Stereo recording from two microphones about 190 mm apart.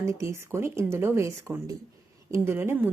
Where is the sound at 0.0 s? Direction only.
15° right (ahead or behind).